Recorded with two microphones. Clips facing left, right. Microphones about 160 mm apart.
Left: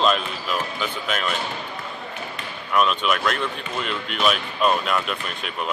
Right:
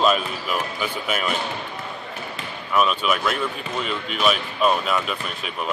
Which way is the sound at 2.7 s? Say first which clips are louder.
Even; 5° right (ahead or behind).